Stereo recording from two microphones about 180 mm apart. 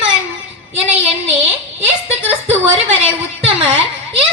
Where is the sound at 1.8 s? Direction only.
35° right (ahead or behind).